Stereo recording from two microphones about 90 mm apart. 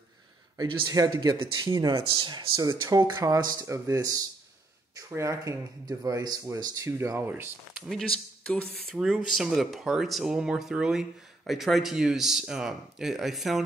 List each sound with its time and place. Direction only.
0.8 s speech: 45° right (ahead or behind); by 1.7 s 60° right (ahead or behind)
1.7 s speech: 45° right (ahead or behind)
2.1 s speech: 55° right (ahead or behind)
3.6 s speech: 35° right (ahead or behind)
8.5 s speech: 15° left (ahead or behind)
9.0 s speech: 5° right (ahead or behind)